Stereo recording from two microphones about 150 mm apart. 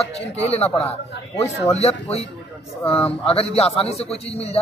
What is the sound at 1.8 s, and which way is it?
Speech, 45° left (ahead or behind).